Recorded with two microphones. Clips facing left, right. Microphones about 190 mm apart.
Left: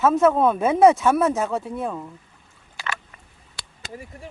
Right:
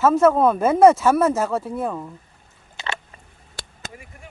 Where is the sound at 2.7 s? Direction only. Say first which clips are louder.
Right 2 dB; 25° right (ahead or behind).